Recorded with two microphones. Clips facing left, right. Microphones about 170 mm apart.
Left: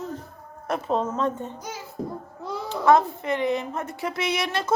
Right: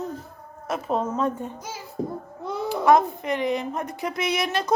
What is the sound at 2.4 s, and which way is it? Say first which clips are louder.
A child's voice: right 1 dB; 20° right (ahead or behind).